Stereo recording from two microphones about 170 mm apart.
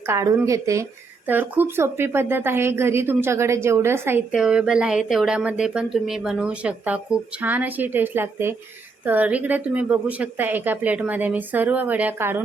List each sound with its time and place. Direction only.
0.1 s speech: 15° right (ahead or behind)